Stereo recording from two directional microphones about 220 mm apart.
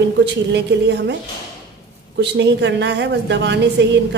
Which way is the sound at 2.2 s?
50° right (ahead or behind).